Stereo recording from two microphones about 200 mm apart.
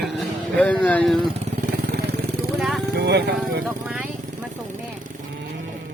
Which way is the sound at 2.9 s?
55° right (ahead or behind).